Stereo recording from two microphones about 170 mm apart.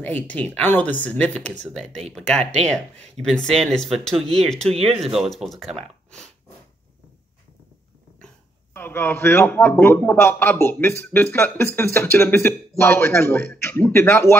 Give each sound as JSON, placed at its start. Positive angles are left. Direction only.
{"t": 0.0, "sound": "speech", "side_deg": 10}
{"t": 3.2, "sound": "speech", "side_deg": 5}
{"t": 4.6, "sound": "speech", "side_deg": -35}
{"t": 5.1, "sound": "speech", "side_deg": 0}
{"t": 5.8, "sound": "a sound", "side_deg": 5}
{"t": 8.7, "sound": "speech", "side_deg": 10}